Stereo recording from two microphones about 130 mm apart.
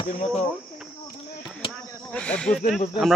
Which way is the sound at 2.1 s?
10° left (ahead or behind).